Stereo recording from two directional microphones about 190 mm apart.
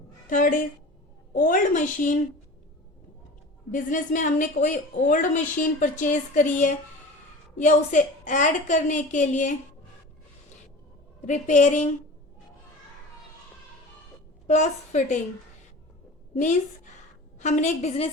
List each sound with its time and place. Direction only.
0.3 s a woman's voice: 45° left (ahead or behind)
3.7 s a woman's voice: 40° left (ahead or behind)
11.2 s a woman's voice: 40° left (ahead or behind)
14.4 s a woman's voice: 40° left (ahead or behind)
16.3 s a woman's voice: 40° left (ahead or behind)